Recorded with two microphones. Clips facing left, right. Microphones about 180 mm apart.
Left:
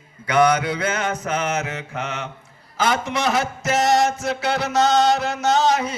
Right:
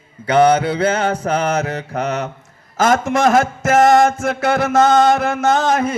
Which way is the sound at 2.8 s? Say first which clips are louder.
Right 7 dB; 45° right (ahead or behind).